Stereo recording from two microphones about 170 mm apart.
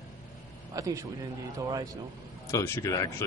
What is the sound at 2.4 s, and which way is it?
Speech, 15° left (ahead or behind).